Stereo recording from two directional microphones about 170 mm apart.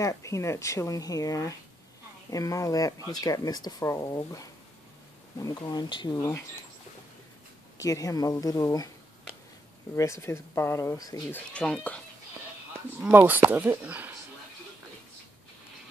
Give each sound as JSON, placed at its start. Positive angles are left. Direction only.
{"t": 0.0, "sound": "speech", "side_deg": 15}
{"t": 7.8, "sound": "speech", "side_deg": 20}
{"t": 9.9, "sound": "speech", "side_deg": 15}
{"t": 11.3, "sound": "speech", "side_deg": 5}
{"t": 13.0, "sound": "speech", "side_deg": -10}